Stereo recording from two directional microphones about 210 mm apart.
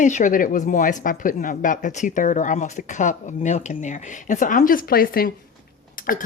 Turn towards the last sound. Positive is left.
turn(degrees=40)  # may be behind; listen again after turning